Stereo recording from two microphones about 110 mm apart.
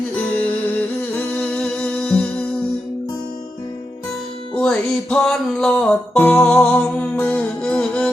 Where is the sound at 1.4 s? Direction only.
10° left (ahead or behind).